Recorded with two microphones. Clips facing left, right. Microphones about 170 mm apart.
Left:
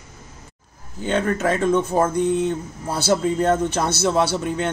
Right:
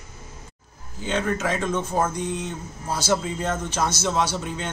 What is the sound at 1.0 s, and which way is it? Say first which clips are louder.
Speech: left 4 dB; 55° left (ahead or behind).